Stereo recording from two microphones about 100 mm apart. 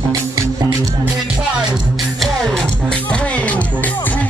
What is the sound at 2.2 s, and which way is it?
Music, 5° left (ahead or behind).